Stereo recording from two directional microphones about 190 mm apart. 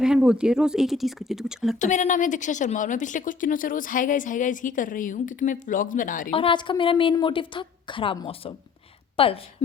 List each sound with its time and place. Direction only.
0.0 s speech: 5° right (ahead or behind)
1.8 s a woman's voice: 40° left (ahead or behind)
6.3 s a woman's voice: 25° left (ahead or behind)